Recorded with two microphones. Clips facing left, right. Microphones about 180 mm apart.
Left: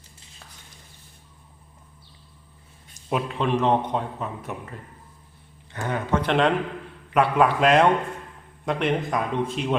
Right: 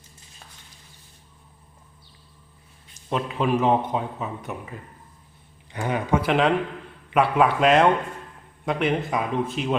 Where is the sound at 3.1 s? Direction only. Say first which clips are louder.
Right 1 dB; centre (ahead or behind).